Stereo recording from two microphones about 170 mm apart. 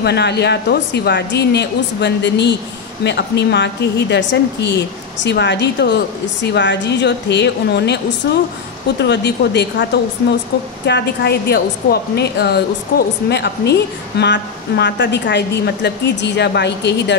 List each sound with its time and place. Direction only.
0.0 s a woman's voice: 75° left (ahead or behind)
10.9 s a woman's voice: 75° left (ahead or behind)